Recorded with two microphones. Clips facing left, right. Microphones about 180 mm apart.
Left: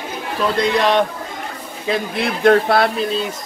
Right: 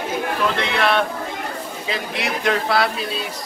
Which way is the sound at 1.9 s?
55° left (ahead or behind).